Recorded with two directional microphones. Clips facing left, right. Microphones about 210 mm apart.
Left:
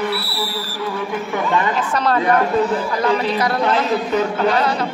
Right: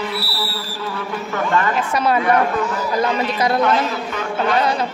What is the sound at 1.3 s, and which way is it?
Speech, 15° left (ahead or behind).